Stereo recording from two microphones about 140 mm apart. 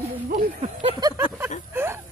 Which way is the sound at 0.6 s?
45° right (ahead or behind).